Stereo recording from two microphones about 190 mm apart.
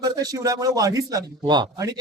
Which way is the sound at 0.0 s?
20° right (ahead or behind).